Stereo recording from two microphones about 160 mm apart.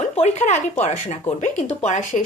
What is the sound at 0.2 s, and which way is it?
Speech, 45° left (ahead or behind).